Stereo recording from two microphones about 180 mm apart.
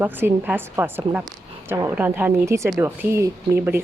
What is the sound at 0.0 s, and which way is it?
A woman's voice, 10° right (ahead or behind).